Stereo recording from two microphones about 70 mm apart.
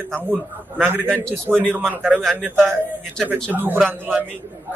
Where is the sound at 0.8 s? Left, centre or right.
Right.